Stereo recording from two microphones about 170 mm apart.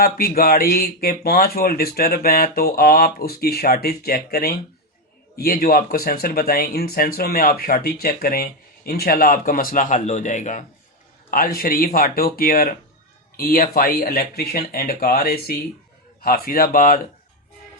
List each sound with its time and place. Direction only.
0.0 s speech: 60° left (ahead or behind); by 10.6 s 45° left (ahead or behind)
11.3 s speech: 60° left (ahead or behind)